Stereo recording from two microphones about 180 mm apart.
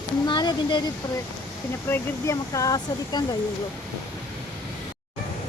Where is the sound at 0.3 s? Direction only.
25° left (ahead or behind).